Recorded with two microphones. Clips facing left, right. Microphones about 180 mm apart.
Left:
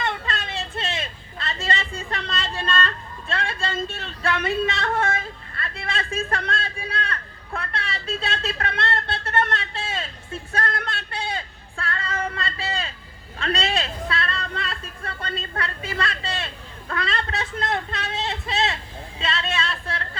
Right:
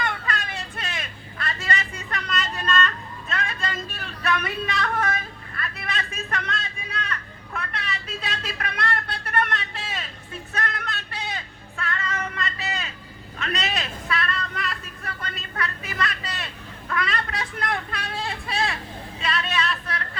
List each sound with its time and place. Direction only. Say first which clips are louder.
0.0 s vehicle: left 1 dB; 25° left (ahead or behind)
13.4 s speech: left 4 dB; 30° left (ahead or behind)
19.2 s a sound: even; 25° left (ahead or behind)